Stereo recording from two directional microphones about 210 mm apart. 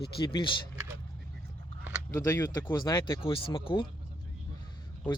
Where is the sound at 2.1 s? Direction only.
15° left (ahead or behind).